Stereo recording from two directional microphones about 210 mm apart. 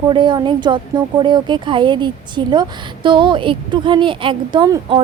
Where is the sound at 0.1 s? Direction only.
20° right (ahead or behind).